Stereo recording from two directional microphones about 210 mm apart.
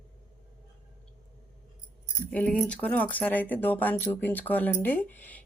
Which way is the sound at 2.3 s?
5° left (ahead or behind).